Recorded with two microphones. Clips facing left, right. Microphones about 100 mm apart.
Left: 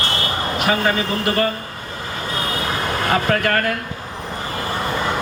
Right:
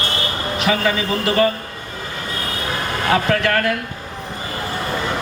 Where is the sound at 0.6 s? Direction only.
45° left (ahead or behind).